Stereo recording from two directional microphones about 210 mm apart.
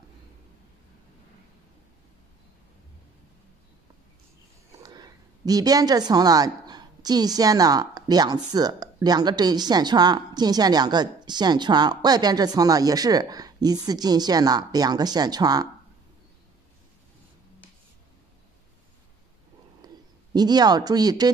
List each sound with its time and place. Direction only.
4.8 s a woman's voice: 20° right (ahead or behind)
19.8 s a sound: 20° right (ahead or behind)
20.3 s a woman's voice: 20° right (ahead or behind)